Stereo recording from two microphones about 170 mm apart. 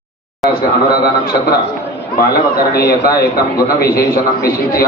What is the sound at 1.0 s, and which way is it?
Speech, 65° left (ahead or behind).